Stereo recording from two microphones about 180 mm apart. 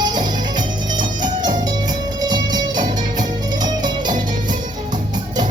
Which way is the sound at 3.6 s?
25° right (ahead or behind).